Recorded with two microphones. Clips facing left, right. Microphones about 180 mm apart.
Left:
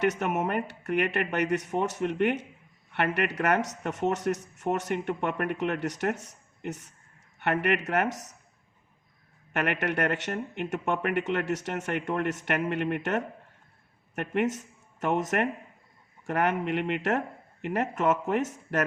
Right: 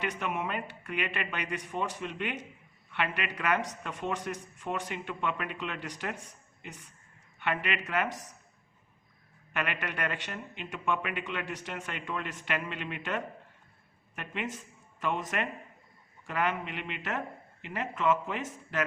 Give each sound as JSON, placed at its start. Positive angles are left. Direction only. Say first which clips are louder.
{"t": 0.2, "sound": "speech", "louder": "left 6 dB", "side_deg": 50}
{"t": 7.3, "sound": "speech", "louder": "left 6 dB", "side_deg": 50}
{"t": 9.5, "sound": "speech", "louder": "left 6 dB", "side_deg": 50}